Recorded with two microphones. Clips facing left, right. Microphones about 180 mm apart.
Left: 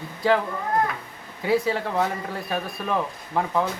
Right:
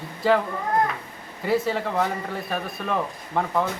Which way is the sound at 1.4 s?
Centre (ahead or behind).